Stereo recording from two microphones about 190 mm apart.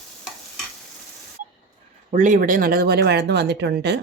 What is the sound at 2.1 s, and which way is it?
Speech, 40° right (ahead or behind).